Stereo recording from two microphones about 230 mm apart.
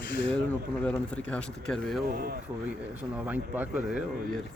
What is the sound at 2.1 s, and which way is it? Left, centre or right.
Speech, right.